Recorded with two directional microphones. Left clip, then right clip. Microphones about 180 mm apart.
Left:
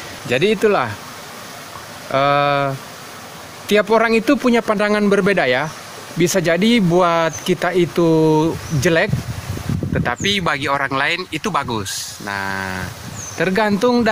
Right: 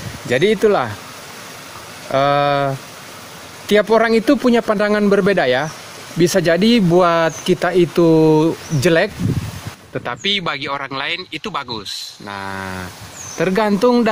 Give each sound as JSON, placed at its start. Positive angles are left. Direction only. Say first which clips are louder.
{"t": 0.3, "sound": "a man's voice", "louder": "right 1 dB", "side_deg": -15}
{"t": 2.0, "sound": "a man's voice", "louder": "even", "side_deg": -15}